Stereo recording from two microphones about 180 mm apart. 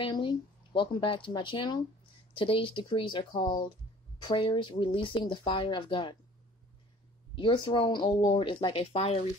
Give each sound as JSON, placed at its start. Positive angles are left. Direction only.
{"t": 0.0, "sound": "speech", "side_deg": 25}
{"t": 7.3, "sound": "speech", "side_deg": 30}